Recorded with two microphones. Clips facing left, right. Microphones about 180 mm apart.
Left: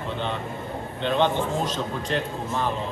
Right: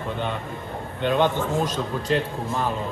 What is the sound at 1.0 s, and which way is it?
Speech, 10° right (ahead or behind).